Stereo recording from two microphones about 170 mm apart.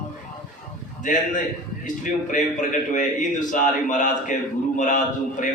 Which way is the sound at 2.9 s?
50° left (ahead or behind).